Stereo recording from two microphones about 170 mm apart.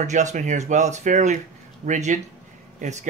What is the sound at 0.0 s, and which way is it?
Speech, 45° right (ahead or behind).